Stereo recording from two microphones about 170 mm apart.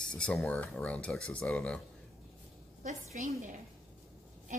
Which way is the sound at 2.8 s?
45° right (ahead or behind).